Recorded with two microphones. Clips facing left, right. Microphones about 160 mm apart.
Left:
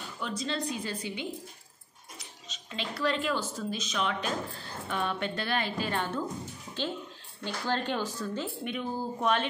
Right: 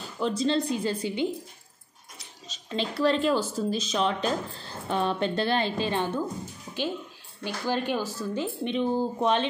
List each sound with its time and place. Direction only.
0.2 s a woman's voice: 30° right (ahead or behind)
2.4 s speech: 35° right (ahead or behind)
7.4 s speech: 10° right (ahead or behind)
8.6 s a woman's voice: 25° right (ahead or behind)